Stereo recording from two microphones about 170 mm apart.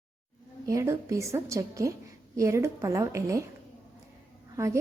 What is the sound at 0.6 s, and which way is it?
Speech, 15° right (ahead or behind).